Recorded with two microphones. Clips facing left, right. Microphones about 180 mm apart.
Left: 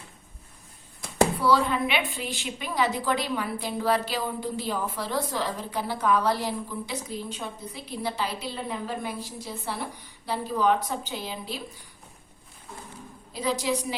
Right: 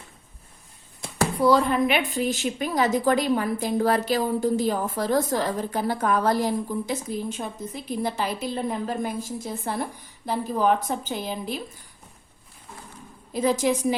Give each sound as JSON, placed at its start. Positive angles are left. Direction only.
{"t": 1.4, "sound": "a woman's voice", "side_deg": -45}
{"t": 13.3, "sound": "a woman's voice", "side_deg": -50}